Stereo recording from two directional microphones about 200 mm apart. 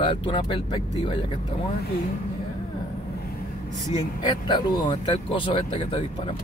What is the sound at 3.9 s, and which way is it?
Speech, 20° left (ahead or behind).